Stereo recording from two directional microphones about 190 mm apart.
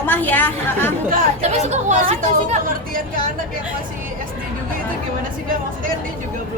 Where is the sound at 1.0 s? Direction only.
40° right (ahead or behind).